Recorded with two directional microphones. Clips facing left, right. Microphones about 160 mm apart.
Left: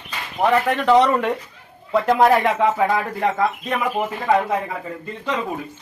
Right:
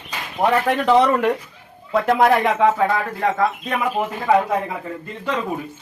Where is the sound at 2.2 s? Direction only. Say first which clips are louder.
Right 1 dB; 15° left (ahead or behind).